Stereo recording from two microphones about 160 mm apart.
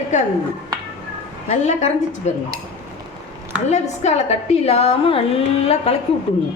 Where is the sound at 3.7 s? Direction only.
45° left (ahead or behind).